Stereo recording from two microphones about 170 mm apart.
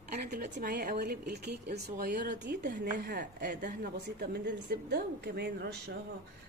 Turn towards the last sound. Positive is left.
turn(degrees=-70)  # may be behind; listen again after turning